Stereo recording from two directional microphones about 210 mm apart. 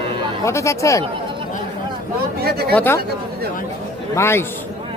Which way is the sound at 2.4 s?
50° right (ahead or behind).